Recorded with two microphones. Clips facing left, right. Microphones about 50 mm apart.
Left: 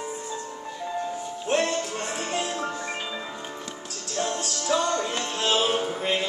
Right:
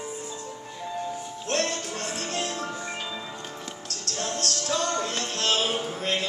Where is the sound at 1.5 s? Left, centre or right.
Centre.